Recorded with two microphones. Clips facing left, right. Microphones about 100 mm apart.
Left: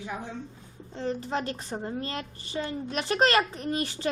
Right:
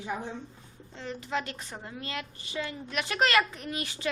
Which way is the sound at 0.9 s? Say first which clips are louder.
Left 4 dB; 35° left (ahead or behind).